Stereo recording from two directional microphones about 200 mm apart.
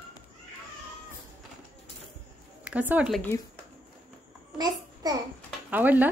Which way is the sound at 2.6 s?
5° right (ahead or behind).